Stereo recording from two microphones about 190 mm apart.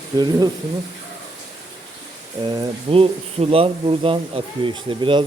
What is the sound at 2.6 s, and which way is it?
Speech, 30° right (ahead or behind).